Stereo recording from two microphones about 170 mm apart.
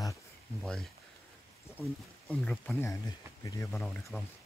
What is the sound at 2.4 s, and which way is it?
Speech, 5° left (ahead or behind).